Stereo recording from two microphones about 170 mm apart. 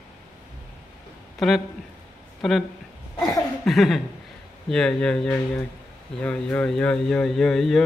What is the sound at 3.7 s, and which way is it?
Speech, centre (ahead or behind).